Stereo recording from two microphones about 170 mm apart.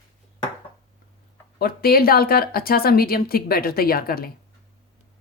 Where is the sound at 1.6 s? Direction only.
60° left (ahead or behind).